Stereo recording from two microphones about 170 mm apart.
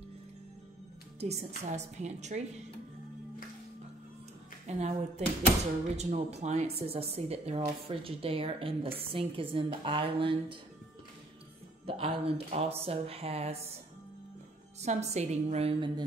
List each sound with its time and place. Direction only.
1.2 s a woman's voice: 40° right (ahead or behind)
4.6 s a woman's voice: 40° right (ahead or behind)
11.8 s a woman's voice: 35° right (ahead or behind)
14.8 s a woman's voice: 40° right (ahead or behind)